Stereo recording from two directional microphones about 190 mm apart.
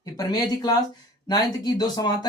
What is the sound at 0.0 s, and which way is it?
Speech, 20° left (ahead or behind).